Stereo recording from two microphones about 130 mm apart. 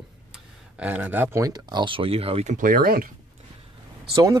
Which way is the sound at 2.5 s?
90° right.